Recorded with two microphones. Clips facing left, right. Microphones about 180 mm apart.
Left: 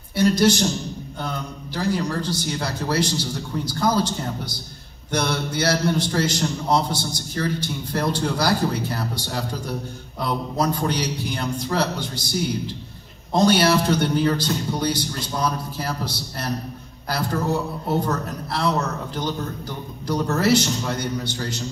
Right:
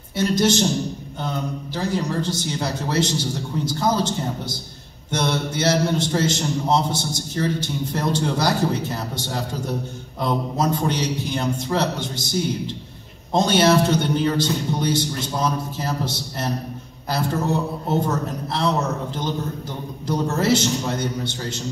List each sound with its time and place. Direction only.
0.2 s a man's voice: 25° right (ahead or behind)
1.8 s a man's voice: 25° right (ahead or behind)
5.1 s a man's voice: 25° right (ahead or behind)